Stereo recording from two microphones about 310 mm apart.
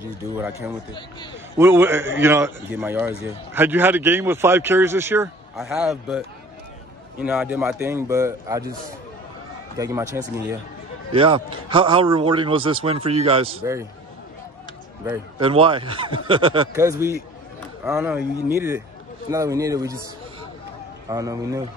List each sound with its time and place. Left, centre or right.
0.0 s a man's voice: centre
9.8 s a man's voice: centre
15.0 s a man's voice: centre
21.1 s a man's voice: centre